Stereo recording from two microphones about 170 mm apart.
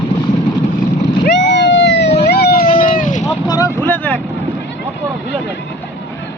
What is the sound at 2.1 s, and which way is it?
Vehicle, 70° left (ahead or behind).